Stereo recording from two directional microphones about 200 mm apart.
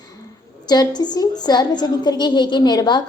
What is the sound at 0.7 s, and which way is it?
A woman's voice, 20° left (ahead or behind).